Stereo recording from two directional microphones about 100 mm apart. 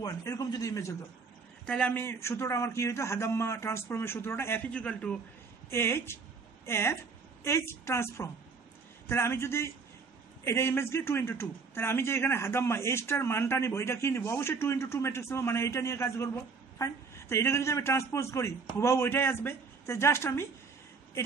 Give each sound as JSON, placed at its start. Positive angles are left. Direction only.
{"t": 0.0, "sound": "speech", "side_deg": 35}
{"t": 1.7, "sound": "a man's voice", "side_deg": 15}
{"t": 4.6, "sound": "a man's voice", "side_deg": 10}
{"t": 5.7, "sound": "a man's voice", "side_deg": 25}